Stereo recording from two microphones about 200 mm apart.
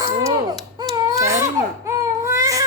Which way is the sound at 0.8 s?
20° right (ahead or behind).